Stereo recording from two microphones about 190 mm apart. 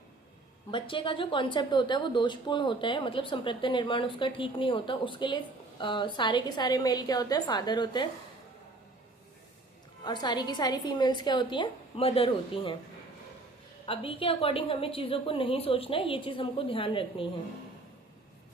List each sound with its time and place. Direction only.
0.7 s a woman's voice: 25° left (ahead or behind)
10.0 s a woman's voice: 25° left (ahead or behind)
13.8 s a woman's voice: 30° left (ahead or behind)